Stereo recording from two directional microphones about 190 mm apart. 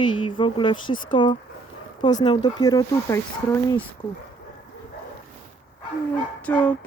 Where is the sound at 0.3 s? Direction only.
25° left (ahead or behind).